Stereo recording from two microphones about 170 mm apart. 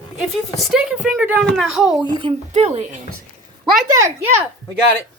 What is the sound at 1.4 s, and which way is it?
Speech, centre (ahead or behind).